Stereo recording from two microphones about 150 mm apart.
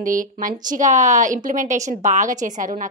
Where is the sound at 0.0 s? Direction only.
60° right (ahead or behind).